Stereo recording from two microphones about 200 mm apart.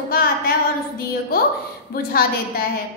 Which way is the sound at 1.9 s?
50° left (ahead or behind).